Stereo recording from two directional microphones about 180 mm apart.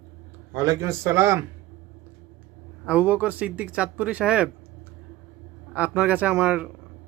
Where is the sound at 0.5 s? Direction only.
20° right (ahead or behind).